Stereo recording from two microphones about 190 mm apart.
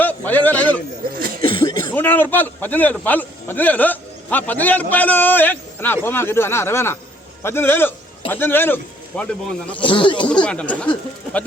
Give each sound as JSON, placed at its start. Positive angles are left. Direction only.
{"t": 0.0, "sound": "a man's voice", "side_deg": 10}
{"t": 1.2, "sound": "a sound", "side_deg": -50}
{"t": 1.5, "sound": "a sound", "side_deg": 25}
{"t": 2.0, "sound": "a man's voice", "side_deg": 10}
{"t": 9.7, "sound": "speech", "side_deg": 25}
{"t": 10.4, "sound": "speech", "side_deg": 5}